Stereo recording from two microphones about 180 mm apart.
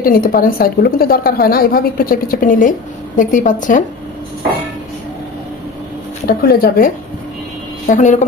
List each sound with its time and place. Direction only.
0.0 s a woman's voice: 55° left (ahead or behind)
6.2 s a woman's voice: 55° left (ahead or behind)
7.9 s a woman's voice: 40° left (ahead or behind)